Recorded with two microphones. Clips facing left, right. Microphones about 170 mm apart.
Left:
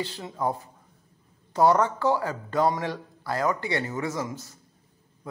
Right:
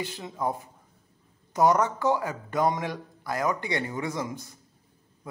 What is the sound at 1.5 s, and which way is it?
A man's voice, 15° right (ahead or behind).